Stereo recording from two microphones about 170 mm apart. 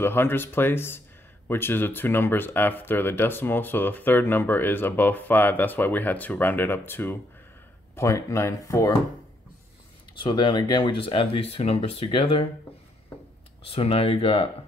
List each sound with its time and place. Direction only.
0.0 s speech: 15° left (ahead or behind)
10.1 s speech: 30° left (ahead or behind)
13.7 s speech: 35° left (ahead or behind)